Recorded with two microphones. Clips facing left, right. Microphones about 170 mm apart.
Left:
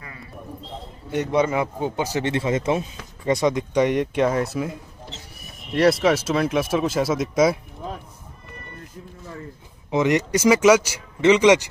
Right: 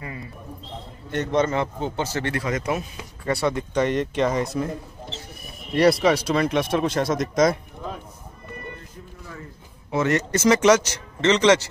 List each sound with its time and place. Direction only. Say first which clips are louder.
1.1 s a man's voice: left 1 dB; 10° left (ahead or behind)
9.8 s a man's voice: left 2 dB; 15° left (ahead or behind)